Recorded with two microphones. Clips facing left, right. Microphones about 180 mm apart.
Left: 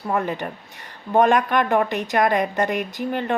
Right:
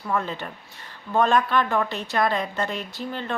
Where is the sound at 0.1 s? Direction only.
15° left (ahead or behind).